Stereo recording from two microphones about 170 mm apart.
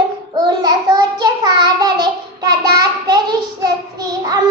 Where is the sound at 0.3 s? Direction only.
25° right (ahead or behind).